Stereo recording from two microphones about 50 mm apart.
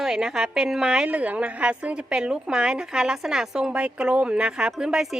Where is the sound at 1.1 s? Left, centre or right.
Right.